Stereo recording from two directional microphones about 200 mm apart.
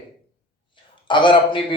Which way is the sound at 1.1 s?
25° left (ahead or behind).